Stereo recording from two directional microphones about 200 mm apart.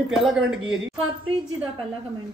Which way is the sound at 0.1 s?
Centre (ahead or behind).